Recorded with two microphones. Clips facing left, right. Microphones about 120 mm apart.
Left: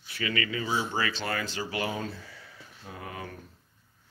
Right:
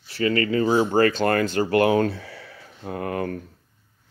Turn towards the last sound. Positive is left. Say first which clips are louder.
# right 13 dB
turn(degrees=-60)  # may be behind; listen again after turning